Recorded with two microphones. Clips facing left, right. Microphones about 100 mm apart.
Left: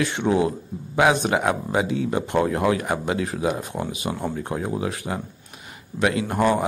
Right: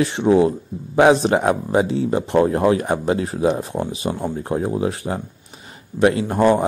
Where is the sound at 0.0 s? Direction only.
30° right (ahead or behind).